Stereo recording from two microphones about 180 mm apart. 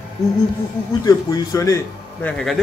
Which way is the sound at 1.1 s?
20° left (ahead or behind).